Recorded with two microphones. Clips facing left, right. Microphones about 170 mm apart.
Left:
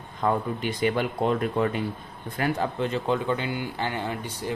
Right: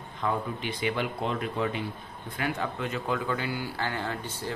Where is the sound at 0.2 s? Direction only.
45° left (ahead or behind).